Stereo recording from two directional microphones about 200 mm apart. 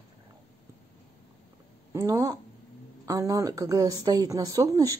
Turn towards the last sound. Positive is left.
turn(degrees=-15)  # may be behind; listen again after turning